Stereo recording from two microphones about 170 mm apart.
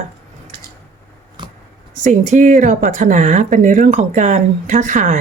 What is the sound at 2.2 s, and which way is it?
Speech, 45° right (ahead or behind).